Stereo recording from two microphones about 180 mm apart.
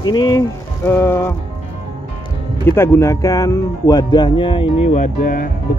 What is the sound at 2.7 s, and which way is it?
Speech, 15° left (ahead or behind).